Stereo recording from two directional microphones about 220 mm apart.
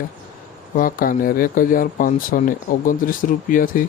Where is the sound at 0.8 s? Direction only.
40° left (ahead or behind).